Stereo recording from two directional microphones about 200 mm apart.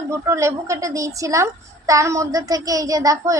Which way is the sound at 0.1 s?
15° right (ahead or behind).